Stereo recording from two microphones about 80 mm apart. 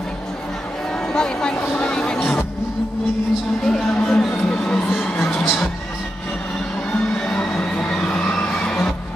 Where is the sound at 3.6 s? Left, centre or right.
Centre.